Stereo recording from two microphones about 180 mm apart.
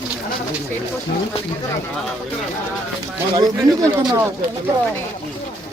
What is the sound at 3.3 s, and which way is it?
Speech, 20° right (ahead or behind).